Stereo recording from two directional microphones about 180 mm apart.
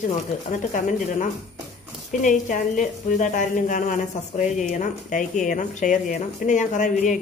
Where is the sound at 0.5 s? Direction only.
45° left (ahead or behind).